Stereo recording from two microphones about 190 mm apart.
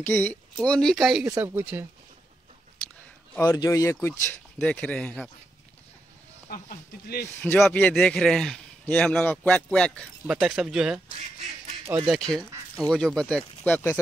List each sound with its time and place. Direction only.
0.0 s a man's voice: 10° left (ahead or behind)
1.3 s speech: 10° right (ahead or behind)
3.3 s a man's voice: 15° left (ahead or behind)
6.5 s speech: 50° left (ahead or behind)
7.2 s a man's voice: 10° left (ahead or behind)
12.1 s a man's voice: 5° left (ahead or behind)